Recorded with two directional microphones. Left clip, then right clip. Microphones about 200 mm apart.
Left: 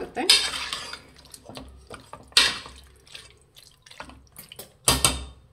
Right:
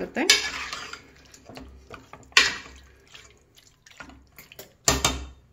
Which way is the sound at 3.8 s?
Centre (ahead or behind).